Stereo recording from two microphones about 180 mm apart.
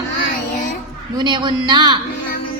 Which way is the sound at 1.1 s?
25° right (ahead or behind).